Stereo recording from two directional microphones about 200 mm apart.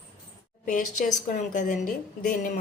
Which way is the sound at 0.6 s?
40° left (ahead or behind).